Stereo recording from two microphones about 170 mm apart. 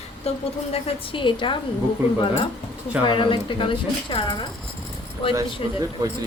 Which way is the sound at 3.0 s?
30° left (ahead or behind).